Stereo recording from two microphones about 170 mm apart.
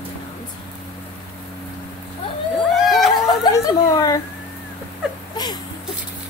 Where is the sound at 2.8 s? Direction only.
Centre (ahead or behind).